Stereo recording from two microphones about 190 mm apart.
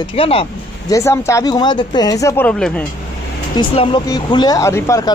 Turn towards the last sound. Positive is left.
turn(degrees=15)  # may be behind; listen again after turning